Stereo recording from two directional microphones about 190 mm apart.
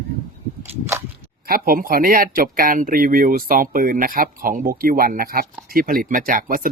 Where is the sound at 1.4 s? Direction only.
50° right (ahead or behind).